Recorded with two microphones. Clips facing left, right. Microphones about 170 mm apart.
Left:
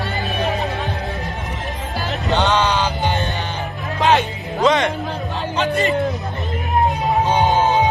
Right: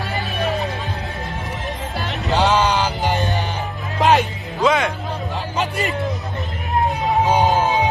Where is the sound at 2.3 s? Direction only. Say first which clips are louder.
Right 1 dB; 5° right (ahead or behind).